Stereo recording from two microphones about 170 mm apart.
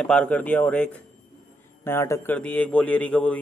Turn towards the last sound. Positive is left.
turn(degrees=5)  # may be behind; listen again after turning